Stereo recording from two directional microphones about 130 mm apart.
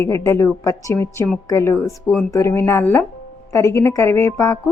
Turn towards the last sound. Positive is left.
turn(degrees=25)  # may be behind; listen again after turning